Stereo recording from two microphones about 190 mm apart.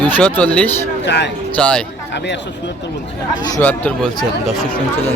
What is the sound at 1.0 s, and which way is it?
Speech, 65° left (ahead or behind).